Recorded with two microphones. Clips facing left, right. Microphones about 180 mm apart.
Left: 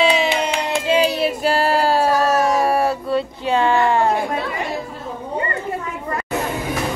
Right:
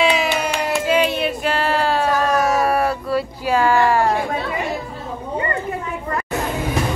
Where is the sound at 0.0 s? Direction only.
30° left (ahead or behind).